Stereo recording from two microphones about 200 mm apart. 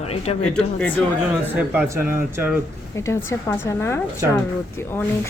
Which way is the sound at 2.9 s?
15° left (ahead or behind).